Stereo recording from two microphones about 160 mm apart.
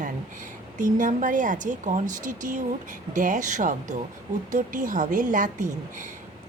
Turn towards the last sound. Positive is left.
turn(degrees=-55)  # may be behind; listen again after turning